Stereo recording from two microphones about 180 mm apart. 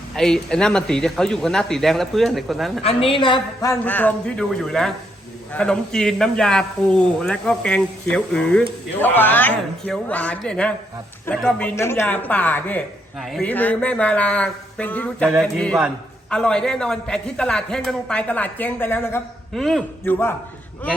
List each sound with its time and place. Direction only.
0.2 s a man's voice: 5° left (ahead or behind)
2.8 s a man's voice: 30° left (ahead or behind); by 20.3 s 10° left (ahead or behind)